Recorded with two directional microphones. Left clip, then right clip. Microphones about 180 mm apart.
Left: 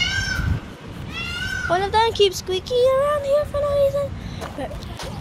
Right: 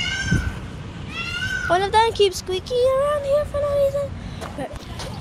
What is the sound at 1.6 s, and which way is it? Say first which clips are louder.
Speech: right 2 dB; 25° right (ahead or behind).